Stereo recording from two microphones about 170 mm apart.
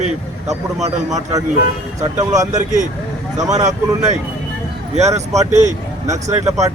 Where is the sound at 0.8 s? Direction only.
40° right (ahead or behind).